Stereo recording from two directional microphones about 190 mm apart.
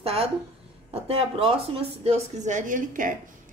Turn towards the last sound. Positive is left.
turn(degrees=-45)  # may be behind; listen again after turning